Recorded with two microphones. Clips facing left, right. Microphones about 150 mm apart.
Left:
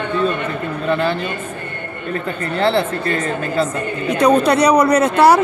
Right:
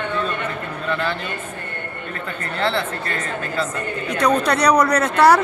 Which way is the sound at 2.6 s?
30° left (ahead or behind).